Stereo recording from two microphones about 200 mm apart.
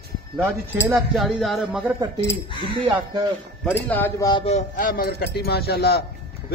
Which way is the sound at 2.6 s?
25° right (ahead or behind).